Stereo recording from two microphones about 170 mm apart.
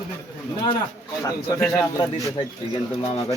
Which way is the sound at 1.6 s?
5° left (ahead or behind).